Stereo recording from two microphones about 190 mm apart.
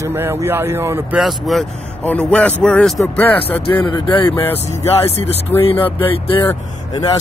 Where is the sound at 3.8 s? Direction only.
20° left (ahead or behind).